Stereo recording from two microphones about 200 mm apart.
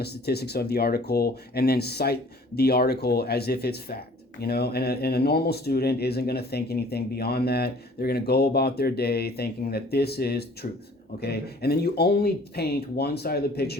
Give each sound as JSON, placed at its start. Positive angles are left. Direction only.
{"t": 0.0, "sound": "speech", "side_deg": 55}